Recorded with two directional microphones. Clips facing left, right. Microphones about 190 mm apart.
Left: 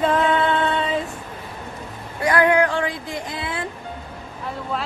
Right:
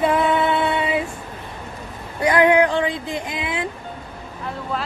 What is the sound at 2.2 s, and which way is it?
Female singing, 20° right (ahead or behind).